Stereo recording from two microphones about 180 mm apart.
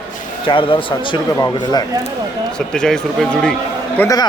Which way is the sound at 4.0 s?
20° left (ahead or behind).